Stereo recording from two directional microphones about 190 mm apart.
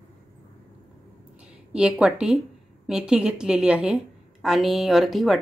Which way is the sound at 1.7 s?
5° right (ahead or behind).